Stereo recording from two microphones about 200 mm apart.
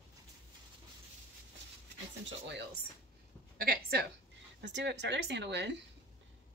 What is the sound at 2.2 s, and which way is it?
Speech, 60° right (ahead or behind).